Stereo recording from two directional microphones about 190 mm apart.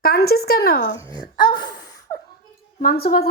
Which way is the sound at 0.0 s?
55° left (ahead or behind).